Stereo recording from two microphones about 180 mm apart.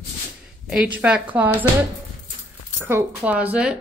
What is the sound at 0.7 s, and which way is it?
Speech, 5° right (ahead or behind).